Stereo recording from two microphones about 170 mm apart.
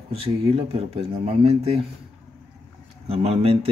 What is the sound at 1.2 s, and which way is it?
Speech, 35° right (ahead or behind).